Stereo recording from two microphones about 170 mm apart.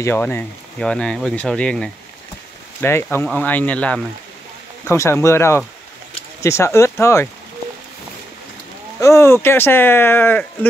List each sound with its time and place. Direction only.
0.0 s speech: 15° left (ahead or behind)
9.0 s speech: 15° left (ahead or behind)